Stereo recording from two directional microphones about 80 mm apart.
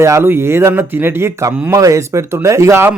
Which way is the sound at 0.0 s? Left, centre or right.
Right.